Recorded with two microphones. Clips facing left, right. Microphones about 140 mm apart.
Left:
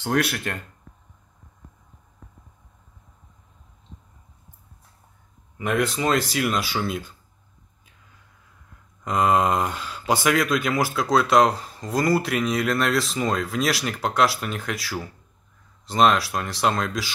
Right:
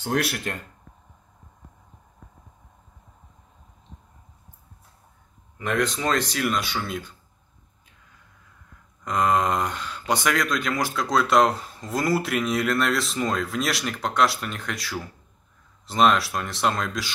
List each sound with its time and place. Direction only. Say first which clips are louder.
0.0 s speech: left 2 dB; 60° left (ahead or behind)
5.6 s speech: left 2 dB; 5° left (ahead or behind)
9.0 s speech: left 2 dB; 5° left (ahead or behind)